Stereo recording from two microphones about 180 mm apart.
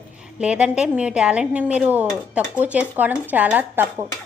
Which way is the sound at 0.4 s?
5° right (ahead or behind).